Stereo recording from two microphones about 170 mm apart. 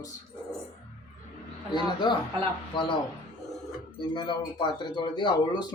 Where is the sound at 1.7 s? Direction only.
25° left (ahead or behind).